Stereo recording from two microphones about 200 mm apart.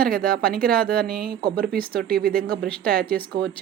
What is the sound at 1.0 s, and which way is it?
Speech, 50° right (ahead or behind).